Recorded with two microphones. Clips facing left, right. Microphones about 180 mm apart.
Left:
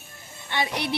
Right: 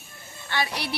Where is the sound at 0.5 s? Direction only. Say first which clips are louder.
Left 2 dB; 20° left (ahead or behind).